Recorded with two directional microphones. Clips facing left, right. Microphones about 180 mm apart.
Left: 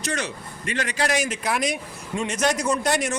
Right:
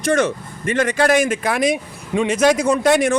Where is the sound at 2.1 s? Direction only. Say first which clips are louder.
Right 8 dB; 90° right; by 3.2 s 60° right (ahead or behind).